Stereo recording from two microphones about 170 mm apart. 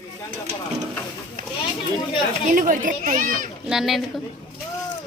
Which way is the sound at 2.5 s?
50° right (ahead or behind).